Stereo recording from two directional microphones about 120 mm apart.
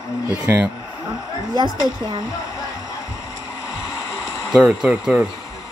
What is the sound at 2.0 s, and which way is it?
Speech, 35° right (ahead or behind).